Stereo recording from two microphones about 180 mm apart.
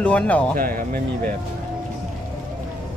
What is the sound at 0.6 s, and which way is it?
Speech, 55° right (ahead or behind).